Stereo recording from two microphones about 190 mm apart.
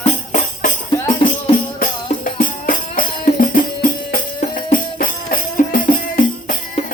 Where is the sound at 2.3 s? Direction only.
45° left (ahead or behind).